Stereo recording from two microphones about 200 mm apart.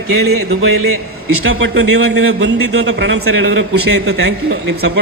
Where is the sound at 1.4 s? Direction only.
75° right (ahead or behind).